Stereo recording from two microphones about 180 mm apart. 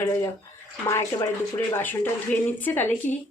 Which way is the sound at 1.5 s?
10° left (ahead or behind).